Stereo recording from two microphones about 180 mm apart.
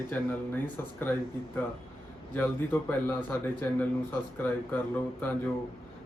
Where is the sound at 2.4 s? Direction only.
10° left (ahead or behind).